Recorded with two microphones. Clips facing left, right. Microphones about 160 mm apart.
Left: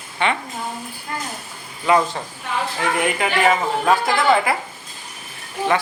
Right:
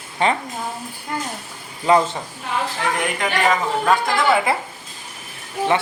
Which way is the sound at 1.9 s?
35° right (ahead or behind).